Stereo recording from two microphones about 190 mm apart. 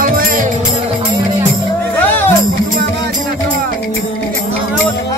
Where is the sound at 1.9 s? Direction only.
10° left (ahead or behind).